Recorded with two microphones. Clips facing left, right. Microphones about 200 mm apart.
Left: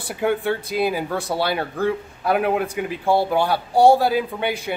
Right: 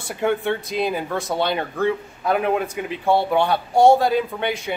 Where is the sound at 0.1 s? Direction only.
Centre (ahead or behind).